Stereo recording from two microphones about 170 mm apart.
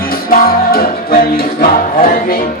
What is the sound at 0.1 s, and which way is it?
Music, 60° left (ahead or behind).